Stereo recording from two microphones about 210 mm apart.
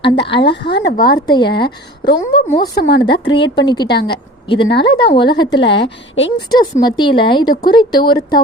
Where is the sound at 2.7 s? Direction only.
55° left (ahead or behind).